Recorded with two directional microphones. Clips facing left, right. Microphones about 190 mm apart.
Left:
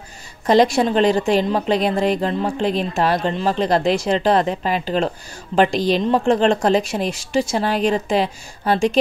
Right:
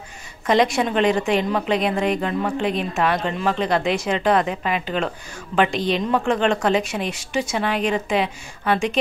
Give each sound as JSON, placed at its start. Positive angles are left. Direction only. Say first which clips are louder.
{"t": 0.5, "sound": "speech", "louder": "left 4 dB", "side_deg": 35}